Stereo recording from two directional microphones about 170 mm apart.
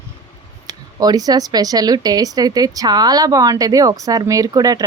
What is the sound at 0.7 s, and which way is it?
Speech, 20° right (ahead or behind).